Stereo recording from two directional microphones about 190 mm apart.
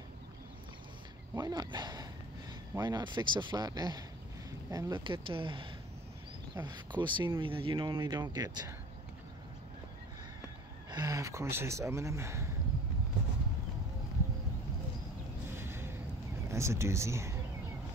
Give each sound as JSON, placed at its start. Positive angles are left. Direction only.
{"t": 1.3, "sound": "speech", "side_deg": -20}
{"t": 10.9, "sound": "speech", "side_deg": -20}
{"t": 15.5, "sound": "gasp", "side_deg": -10}
{"t": 16.4, "sound": "speech", "side_deg": -15}